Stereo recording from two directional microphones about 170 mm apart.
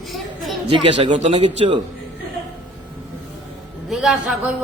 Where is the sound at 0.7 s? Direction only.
25° right (ahead or behind).